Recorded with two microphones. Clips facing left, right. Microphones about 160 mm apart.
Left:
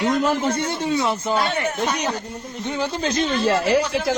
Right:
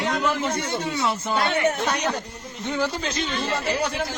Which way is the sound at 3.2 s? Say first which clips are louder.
Left 9 dB; 75° left (ahead or behind).